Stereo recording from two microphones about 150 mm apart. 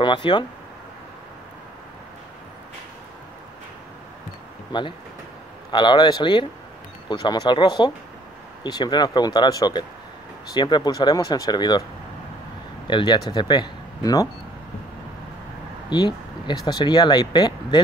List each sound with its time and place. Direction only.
0.0 s speech: 30° left (ahead or behind)
4.7 s speech: 30° left (ahead or behind)
12.8 s speech: 30° left (ahead or behind)
15.9 s speech: 30° left (ahead or behind)